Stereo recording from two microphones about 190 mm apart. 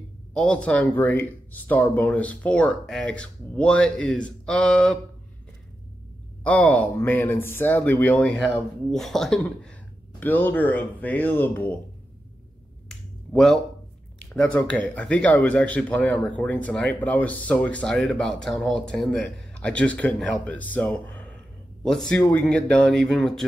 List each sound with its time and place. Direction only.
0.3 s speech: 5° left (ahead or behind)
6.4 s speech: 5° left (ahead or behind)
12.8 s finger snapping: centre (ahead or behind)
14.4 s speech: 10° left (ahead or behind)